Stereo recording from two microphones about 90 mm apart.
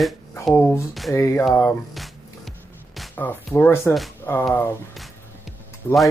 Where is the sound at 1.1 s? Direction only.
30° left (ahead or behind).